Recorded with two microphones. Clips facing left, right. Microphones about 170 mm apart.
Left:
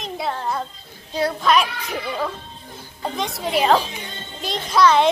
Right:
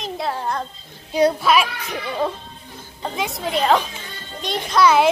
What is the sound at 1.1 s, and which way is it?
Speech, 10° right (ahead or behind).